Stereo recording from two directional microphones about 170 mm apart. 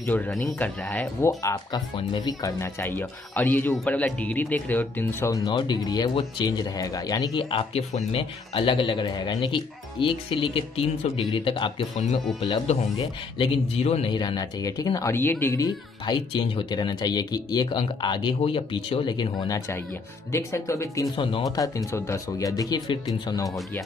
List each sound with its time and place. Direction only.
0.3 s speech: 5° left (ahead or behind); by 14.1 s 35° left (ahead or behind)
14.1 s speech: 25° left (ahead or behind)